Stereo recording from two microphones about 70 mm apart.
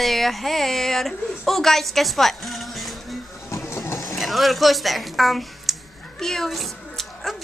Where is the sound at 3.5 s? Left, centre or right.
Left.